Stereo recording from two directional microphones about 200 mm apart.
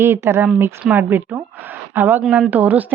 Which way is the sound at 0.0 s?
10° right (ahead or behind).